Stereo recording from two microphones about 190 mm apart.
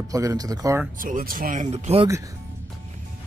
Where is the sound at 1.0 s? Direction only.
45° right (ahead or behind).